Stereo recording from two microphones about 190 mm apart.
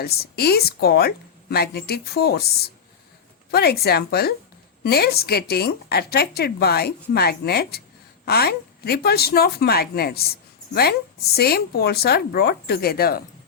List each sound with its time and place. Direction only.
0.0 s a woman's voice: 55° left (ahead or behind)